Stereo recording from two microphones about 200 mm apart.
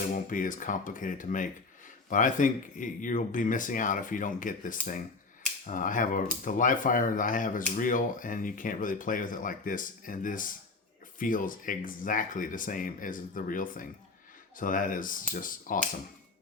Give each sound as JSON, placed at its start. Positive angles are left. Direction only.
{"t": 0.1, "sound": "speech", "side_deg": 40}